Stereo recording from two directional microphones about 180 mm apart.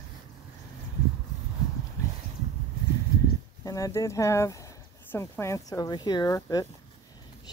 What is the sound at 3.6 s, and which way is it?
Speech, 20° left (ahead or behind).